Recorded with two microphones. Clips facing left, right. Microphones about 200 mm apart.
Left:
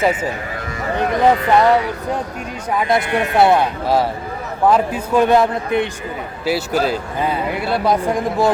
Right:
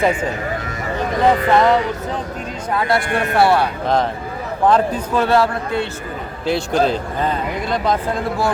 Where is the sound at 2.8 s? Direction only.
20° left (ahead or behind).